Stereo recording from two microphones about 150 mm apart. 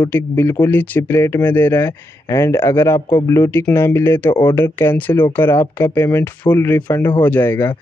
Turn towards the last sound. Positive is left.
turn(degrees=15)  # may be behind; listen again after turning